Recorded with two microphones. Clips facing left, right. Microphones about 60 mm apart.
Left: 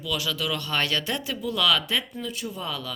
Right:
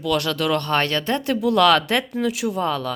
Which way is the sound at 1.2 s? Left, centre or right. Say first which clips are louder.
Right 10 dB; right.